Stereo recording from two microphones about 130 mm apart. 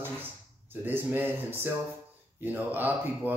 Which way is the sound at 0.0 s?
15° right (ahead or behind).